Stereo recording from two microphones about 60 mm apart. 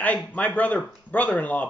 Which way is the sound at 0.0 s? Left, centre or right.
Left.